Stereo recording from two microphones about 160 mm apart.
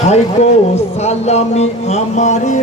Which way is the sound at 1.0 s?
40° left (ahead or behind).